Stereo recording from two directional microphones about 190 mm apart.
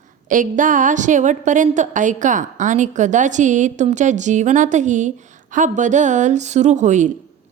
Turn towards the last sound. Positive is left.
turn(degrees=-40)  # may be behind; listen again after turning